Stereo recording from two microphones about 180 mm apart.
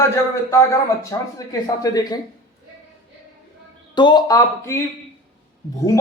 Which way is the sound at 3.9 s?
25° left (ahead or behind).